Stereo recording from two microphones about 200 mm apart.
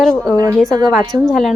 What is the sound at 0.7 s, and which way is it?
Speech, 20° right (ahead or behind).